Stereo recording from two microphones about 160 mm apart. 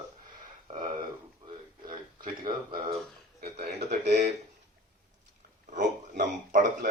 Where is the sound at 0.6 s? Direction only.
30° right (ahead or behind).